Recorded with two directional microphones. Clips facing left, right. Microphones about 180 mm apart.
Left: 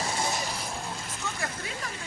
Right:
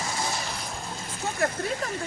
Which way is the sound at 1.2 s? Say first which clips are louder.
Right 10 dB; 55° right (ahead or behind).